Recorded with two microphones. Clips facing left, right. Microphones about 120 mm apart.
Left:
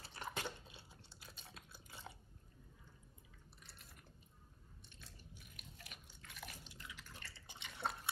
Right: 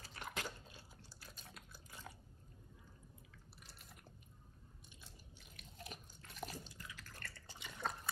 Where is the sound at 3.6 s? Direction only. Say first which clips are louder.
Right 1 dB; centre (ahead or behind).